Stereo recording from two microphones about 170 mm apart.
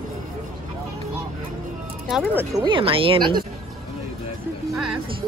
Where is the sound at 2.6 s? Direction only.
30° right (ahead or behind).